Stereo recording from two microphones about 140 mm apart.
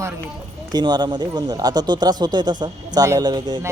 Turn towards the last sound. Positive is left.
turn(degrees=-30)  # may be behind; listen again after turning